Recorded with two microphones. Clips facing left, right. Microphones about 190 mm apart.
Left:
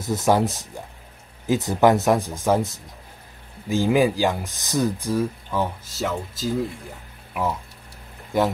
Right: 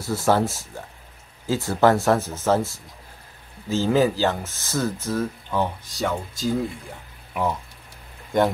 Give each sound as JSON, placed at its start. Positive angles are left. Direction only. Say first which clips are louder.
{"t": 0.0, "sound": "speech", "louder": "left 1 dB", "side_deg": 20}
{"t": 8.3, "sound": "speech", "louder": "right 1 dB", "side_deg": 5}